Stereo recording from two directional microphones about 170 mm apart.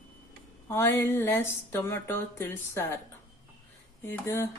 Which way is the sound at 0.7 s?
15° left (ahead or behind).